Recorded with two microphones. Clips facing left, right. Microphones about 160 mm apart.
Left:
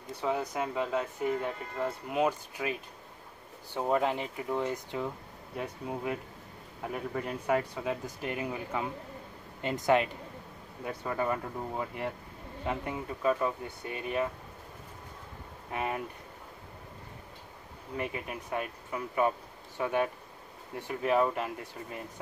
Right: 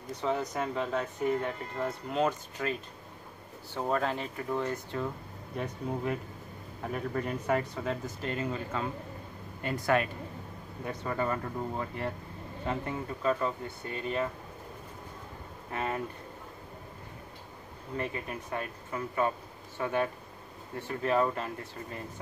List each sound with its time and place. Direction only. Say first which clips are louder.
0.1 s speech: even; 10° left (ahead or behind)
10.8 s speech: even; 10° left (ahead or behind)
15.7 s speech: even; 15° left (ahead or behind)
17.9 s speech: even; 15° left (ahead or behind)